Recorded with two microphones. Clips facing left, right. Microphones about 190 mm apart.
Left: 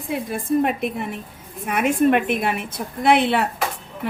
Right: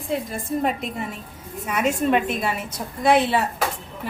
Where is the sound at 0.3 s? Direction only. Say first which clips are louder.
Left 4 dB; 60° left (ahead or behind).